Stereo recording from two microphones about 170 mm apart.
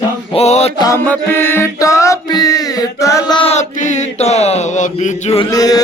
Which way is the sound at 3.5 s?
45° left (ahead or behind).